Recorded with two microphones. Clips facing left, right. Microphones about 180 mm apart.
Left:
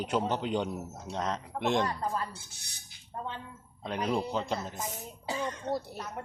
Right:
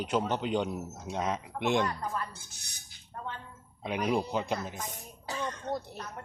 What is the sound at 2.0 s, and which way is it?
Speech, 30° left (ahead or behind).